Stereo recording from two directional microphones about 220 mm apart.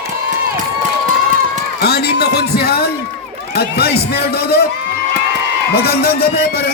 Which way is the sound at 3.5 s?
45° left (ahead or behind).